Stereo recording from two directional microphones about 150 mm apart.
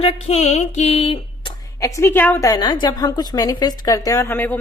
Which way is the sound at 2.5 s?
30° left (ahead or behind).